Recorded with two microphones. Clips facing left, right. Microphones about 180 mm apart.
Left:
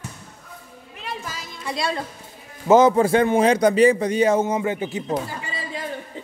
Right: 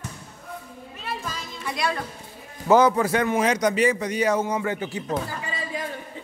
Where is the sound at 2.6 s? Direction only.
25° left (ahead or behind).